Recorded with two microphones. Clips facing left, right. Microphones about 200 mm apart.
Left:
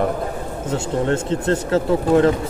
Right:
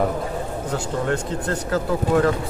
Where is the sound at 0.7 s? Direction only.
25° left (ahead or behind).